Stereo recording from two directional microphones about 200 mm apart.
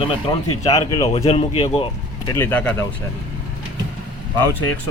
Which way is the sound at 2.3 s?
10° left (ahead or behind).